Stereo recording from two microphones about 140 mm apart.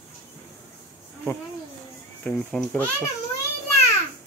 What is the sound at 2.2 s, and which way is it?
Speech, 5° left (ahead or behind).